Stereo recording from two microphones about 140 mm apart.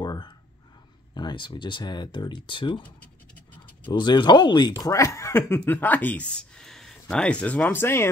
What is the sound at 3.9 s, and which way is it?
Speech, 35° left (ahead or behind).